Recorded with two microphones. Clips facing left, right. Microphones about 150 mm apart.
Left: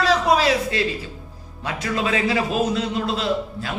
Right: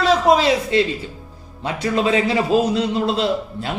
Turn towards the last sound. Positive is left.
turn(degrees=-30)  # may be behind; listen again after turning